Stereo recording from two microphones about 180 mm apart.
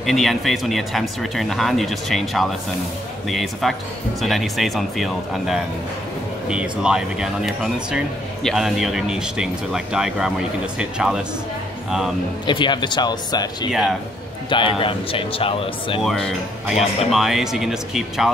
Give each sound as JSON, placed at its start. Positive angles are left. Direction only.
{"t": 0.0, "sound": "speech", "side_deg": 0}
{"t": 12.4, "sound": "speech", "side_deg": 25}
{"t": 13.7, "sound": "speech", "side_deg": -5}
{"t": 14.5, "sound": "speech", "side_deg": 30}
{"t": 16.0, "sound": "speech", "side_deg": 0}